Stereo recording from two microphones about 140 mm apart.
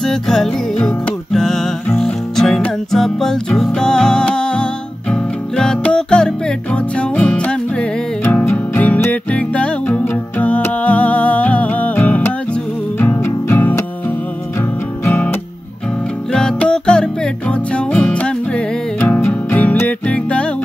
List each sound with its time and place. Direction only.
0.0 s music: 5° left (ahead or behind)
15.0 s music: 15° left (ahead or behind)